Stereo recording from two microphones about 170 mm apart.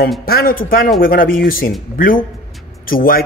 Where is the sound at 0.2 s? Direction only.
60° left (ahead or behind).